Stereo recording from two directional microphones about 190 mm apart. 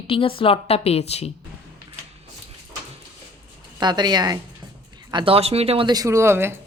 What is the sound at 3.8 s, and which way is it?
Speech, 20° right (ahead or behind).